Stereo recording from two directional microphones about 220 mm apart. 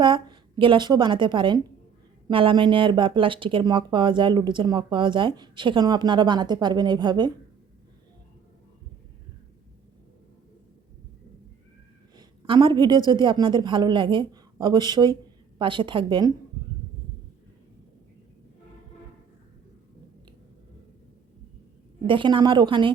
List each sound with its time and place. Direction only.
0.0 s a woman's voice: 20° right (ahead or behind)
12.1 s a woman's voice: 20° right (ahead or behind)
22.0 s speech: 20° right (ahead or behind)